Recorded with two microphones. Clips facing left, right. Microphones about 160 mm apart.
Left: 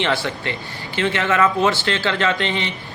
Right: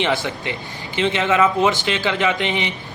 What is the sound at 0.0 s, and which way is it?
A man's voice, 15° right (ahead or behind).